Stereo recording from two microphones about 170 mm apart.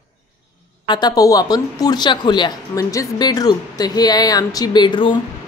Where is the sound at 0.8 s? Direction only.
25° left (ahead or behind).